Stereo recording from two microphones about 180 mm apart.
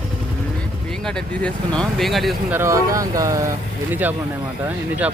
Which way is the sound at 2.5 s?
15° right (ahead or behind).